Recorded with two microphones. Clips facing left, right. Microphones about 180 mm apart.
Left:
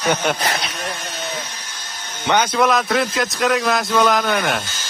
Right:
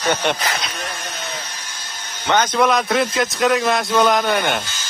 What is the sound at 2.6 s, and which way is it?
Speech, centre (ahead or behind).